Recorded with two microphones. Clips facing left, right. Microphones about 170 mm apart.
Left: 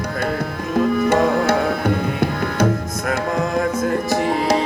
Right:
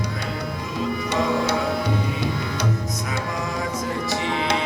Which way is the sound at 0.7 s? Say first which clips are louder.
Left 9 dB; 55° left (ahead or behind).